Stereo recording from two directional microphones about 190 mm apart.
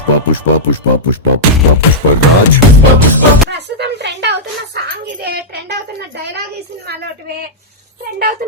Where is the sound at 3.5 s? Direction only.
60° right (ahead or behind).